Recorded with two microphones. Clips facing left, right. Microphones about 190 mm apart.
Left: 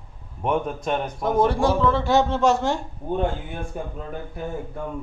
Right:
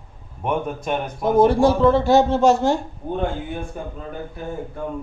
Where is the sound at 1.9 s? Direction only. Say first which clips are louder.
Right 4 dB; 35° right (ahead or behind).